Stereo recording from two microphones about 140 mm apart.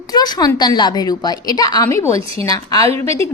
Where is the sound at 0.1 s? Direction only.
30° left (ahead or behind).